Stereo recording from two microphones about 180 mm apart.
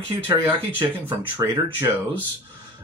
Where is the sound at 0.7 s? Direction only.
15° right (ahead or behind).